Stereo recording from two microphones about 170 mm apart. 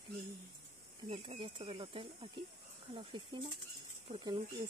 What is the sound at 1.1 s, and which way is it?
Speech, 35° right (ahead or behind).